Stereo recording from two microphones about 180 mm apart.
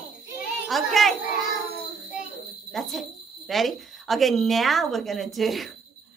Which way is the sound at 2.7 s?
Centre (ahead or behind).